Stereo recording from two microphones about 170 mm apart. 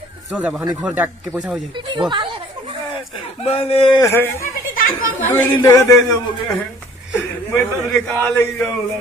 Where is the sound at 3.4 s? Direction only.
35° left (ahead or behind).